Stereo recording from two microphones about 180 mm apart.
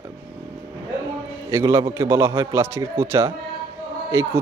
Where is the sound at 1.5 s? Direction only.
20° right (ahead or behind).